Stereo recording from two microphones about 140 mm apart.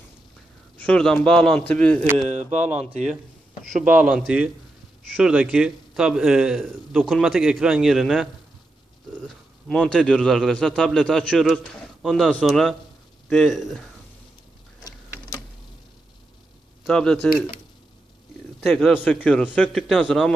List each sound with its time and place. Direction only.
0.7 s a man's voice: 5° left (ahead or behind)
2.2 s speech: 55° right (ahead or behind)
4.3 s a man's voice: 10° right (ahead or behind)
9.3 s a man's voice: 5° left (ahead or behind)
16.8 s a man's voice: 5° left (ahead or behind)
18.6 s a man's voice: centre (ahead or behind)
19.9 s a man's voice: centre (ahead or behind)